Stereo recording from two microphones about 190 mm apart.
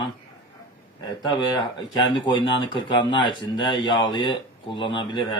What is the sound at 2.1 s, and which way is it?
Speech, 25° left (ahead or behind).